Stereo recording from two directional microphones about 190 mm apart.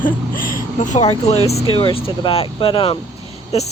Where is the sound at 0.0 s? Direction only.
50° left (ahead or behind).